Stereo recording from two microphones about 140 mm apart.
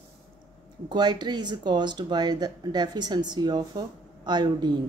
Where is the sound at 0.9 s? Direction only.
30° right (ahead or behind).